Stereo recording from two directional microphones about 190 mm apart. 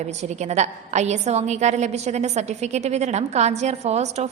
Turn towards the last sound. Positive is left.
turn(degrees=-35)  # may be behind; listen again after turning